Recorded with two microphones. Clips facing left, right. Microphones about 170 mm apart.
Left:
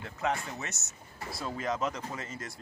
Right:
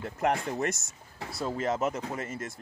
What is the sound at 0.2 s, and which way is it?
Speech, 55° right (ahead or behind).